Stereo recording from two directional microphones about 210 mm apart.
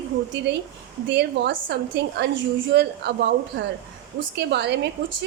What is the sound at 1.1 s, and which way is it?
A woman's voice, 55° right (ahead or behind).